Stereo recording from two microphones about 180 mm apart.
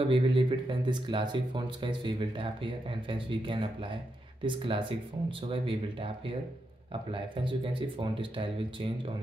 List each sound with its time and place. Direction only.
0.1 s speech: 30° right (ahead or behind)